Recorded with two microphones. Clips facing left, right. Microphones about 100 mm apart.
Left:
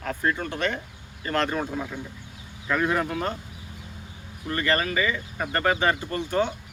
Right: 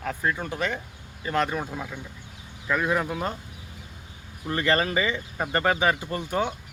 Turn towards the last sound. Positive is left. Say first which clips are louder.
# left 2 dB
turn(degrees=-10)  # may be behind; listen again after turning